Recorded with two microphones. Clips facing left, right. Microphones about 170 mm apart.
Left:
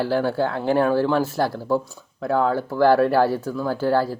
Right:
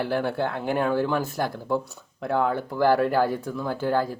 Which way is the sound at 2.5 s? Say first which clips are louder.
Left 6 dB; 20° right (ahead or behind).